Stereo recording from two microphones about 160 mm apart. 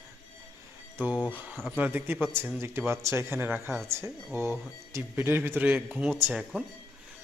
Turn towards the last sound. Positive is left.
turn(degrees=-5)  # may be behind; listen again after turning